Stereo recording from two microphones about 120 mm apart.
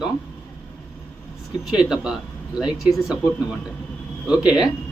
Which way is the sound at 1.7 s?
5° right (ahead or behind).